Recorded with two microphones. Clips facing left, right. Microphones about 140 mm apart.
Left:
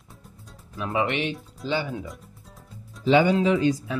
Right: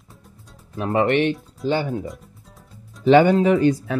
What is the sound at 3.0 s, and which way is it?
Speech, 55° right (ahead or behind).